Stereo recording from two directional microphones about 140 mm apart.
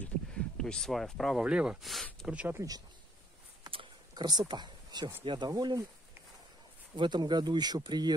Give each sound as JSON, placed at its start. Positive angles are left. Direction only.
{"t": 0.0, "sound": "speech", "side_deg": 5}
{"t": 3.7, "sound": "a sound", "side_deg": -30}
{"t": 5.2, "sound": "speech", "side_deg": -35}
{"t": 7.0, "sound": "speech", "side_deg": -30}